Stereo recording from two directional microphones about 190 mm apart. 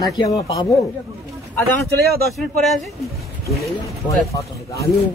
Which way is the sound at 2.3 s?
Centre (ahead or behind).